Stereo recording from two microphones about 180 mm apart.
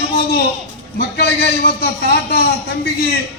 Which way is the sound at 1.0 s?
60° left (ahead or behind).